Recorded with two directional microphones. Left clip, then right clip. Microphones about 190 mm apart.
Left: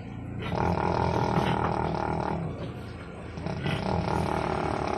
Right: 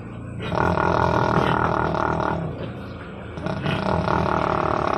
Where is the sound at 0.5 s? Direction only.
45° right (ahead or behind).